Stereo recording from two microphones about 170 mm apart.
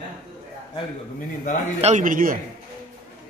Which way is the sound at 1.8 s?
45° right (ahead or behind).